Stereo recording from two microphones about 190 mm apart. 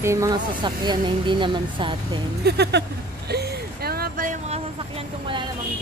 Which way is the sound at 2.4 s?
60° right (ahead or behind).